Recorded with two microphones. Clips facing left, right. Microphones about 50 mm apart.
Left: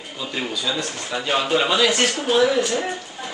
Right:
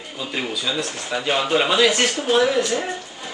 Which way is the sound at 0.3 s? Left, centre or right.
Centre.